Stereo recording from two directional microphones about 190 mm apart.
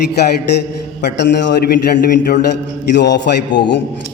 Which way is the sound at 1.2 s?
70° left (ahead or behind).